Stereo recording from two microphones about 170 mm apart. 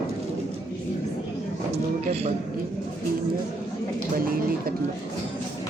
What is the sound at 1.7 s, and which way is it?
Speech, 40° right (ahead or behind).